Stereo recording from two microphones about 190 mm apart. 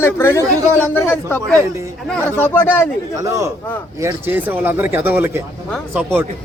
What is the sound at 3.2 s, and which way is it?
Speech, 15° right (ahead or behind).